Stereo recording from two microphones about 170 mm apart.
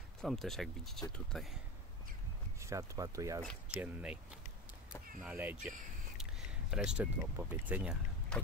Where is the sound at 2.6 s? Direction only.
20° right (ahead or behind).